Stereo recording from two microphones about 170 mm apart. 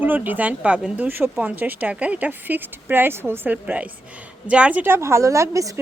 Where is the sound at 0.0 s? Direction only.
10° right (ahead or behind).